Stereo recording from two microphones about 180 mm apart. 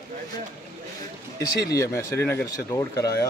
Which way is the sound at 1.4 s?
15° left (ahead or behind).